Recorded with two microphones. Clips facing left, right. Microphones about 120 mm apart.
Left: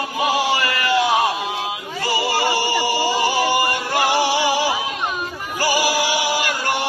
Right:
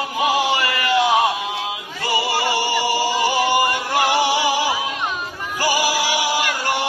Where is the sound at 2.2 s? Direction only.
15° right (ahead or behind).